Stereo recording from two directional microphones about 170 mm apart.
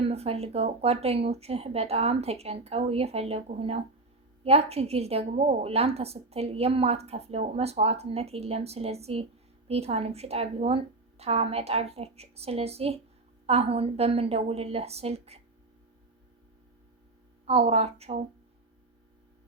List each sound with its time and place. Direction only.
0.0 s a woman's voice: 35° right (ahead or behind)
17.4 s a woman's voice: 35° right (ahead or behind)